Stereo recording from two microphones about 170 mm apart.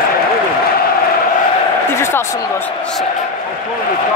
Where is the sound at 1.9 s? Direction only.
15° left (ahead or behind).